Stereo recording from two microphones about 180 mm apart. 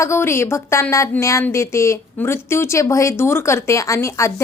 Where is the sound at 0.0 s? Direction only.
15° left (ahead or behind).